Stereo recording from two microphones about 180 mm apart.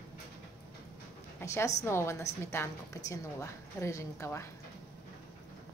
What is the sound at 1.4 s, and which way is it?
A woman's voice, 15° left (ahead or behind).